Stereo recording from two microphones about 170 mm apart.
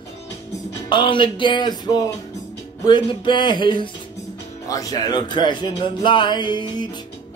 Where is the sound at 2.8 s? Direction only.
25° left (ahead or behind).